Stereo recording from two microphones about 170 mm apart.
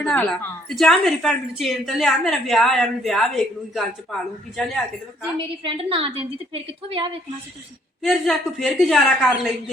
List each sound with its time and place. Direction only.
0.0 s a woman's voice: 5° left (ahead or behind)
5.6 s a woman's voice: 30° right (ahead or behind)
8.0 s a woman's voice: centre (ahead or behind)